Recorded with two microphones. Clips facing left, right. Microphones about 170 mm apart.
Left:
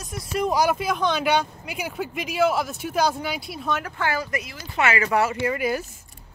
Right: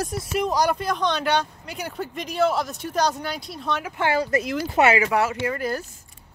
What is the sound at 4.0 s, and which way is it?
Speech, 25° right (ahead or behind).